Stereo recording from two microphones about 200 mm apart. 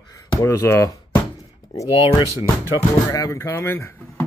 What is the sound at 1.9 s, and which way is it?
Speech, 25° left (ahead or behind).